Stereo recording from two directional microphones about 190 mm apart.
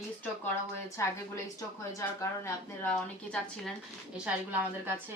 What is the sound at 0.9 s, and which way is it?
Speech, 15° left (ahead or behind).